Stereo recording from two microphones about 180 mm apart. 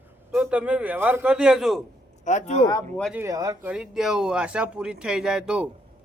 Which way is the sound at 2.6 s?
20° left (ahead or behind).